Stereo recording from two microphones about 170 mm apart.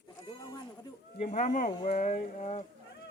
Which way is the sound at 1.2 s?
45° left (ahead or behind).